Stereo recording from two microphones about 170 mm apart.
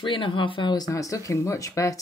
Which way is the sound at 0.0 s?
30° left (ahead or behind).